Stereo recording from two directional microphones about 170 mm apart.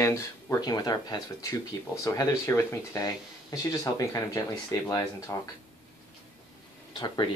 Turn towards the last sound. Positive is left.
turn(degrees=25)  # may be behind; listen again after turning